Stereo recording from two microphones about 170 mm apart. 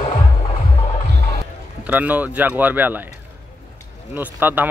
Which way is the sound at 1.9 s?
10° right (ahead or behind).